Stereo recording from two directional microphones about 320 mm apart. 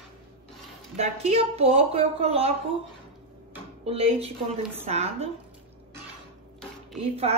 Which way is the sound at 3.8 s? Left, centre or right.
Centre.